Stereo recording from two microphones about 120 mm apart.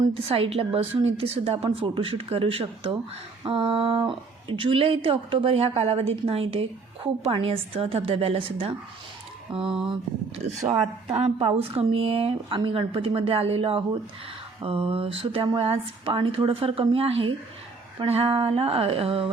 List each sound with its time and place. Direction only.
0.2 s speech: 50° right (ahead or behind)
10.3 s speech: 60° right (ahead or behind)